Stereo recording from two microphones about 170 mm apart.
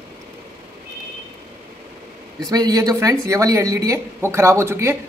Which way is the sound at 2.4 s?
25° right (ahead or behind).